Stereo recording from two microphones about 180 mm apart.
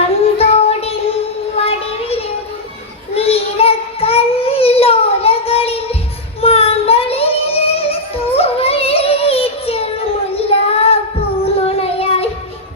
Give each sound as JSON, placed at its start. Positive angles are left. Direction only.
{"t": 0.3, "sound": "child singing", "side_deg": 35}
{"t": 6.4, "sound": "music", "side_deg": 35}
{"t": 8.3, "sound": "child singing", "side_deg": 35}